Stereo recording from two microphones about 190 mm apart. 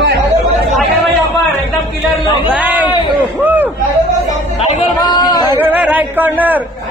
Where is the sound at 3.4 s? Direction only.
10° right (ahead or behind).